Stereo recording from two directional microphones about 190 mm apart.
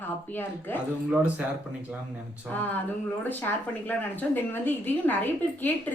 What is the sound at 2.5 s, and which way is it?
A woman's voice, 10° left (ahead or behind).